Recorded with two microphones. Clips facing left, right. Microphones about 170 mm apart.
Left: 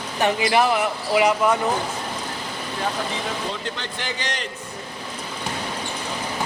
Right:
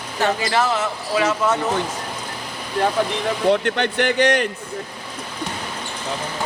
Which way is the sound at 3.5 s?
65° right (ahead or behind).